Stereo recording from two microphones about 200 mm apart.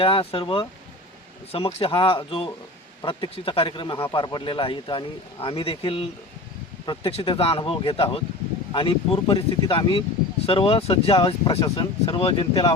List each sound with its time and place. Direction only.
0.0 s speech: 25° left (ahead or behind)